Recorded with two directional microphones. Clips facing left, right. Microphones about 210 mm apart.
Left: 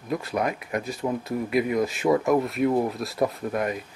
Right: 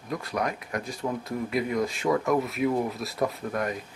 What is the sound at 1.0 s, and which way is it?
Speech, 15° left (ahead or behind).